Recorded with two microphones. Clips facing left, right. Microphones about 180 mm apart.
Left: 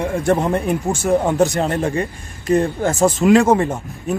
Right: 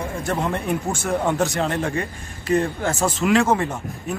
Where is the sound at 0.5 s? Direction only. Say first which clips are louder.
Left 5 dB; 35° left (ahead or behind).